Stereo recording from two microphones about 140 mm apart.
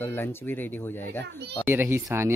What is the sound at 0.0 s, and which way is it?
A child's voice, 15° left (ahead or behind).